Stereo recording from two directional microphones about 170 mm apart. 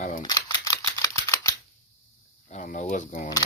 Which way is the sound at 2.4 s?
45° left (ahead or behind).